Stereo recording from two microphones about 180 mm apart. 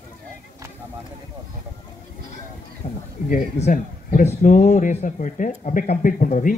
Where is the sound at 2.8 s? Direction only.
45° left (ahead or behind).